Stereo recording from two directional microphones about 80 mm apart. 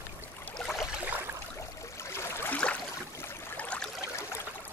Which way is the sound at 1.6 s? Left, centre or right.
Left.